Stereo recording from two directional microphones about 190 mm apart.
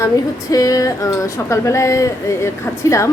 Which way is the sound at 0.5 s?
20° left (ahead or behind).